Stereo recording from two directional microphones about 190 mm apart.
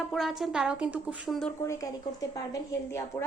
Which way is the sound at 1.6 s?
15° left (ahead or behind).